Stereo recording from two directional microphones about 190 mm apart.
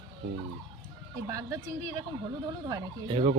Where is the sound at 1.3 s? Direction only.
20° right (ahead or behind).